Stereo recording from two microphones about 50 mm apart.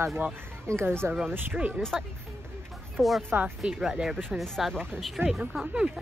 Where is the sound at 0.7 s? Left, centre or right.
Right.